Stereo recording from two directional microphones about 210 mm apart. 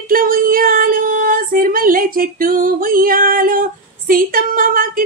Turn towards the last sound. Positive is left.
turn(degrees=-40)  # may be behind; listen again after turning